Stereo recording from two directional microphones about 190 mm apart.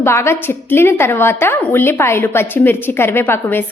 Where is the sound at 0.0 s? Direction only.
15° left (ahead or behind).